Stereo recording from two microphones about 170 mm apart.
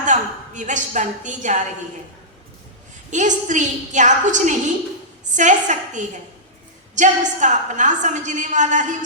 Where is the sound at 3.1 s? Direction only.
45° right (ahead or behind).